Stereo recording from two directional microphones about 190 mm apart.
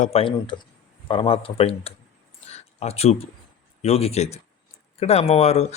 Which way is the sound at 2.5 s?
35° left (ahead or behind).